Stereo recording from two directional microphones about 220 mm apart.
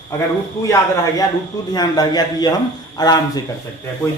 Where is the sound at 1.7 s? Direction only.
20° left (ahead or behind).